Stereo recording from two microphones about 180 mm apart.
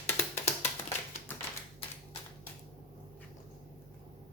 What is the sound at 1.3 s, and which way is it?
Typing, 10° left (ahead or behind).